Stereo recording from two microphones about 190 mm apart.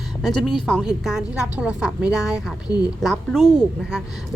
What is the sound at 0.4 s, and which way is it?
A woman's voice, centre (ahead or behind).